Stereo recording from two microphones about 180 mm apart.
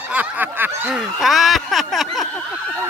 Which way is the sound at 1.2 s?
Centre (ahead or behind).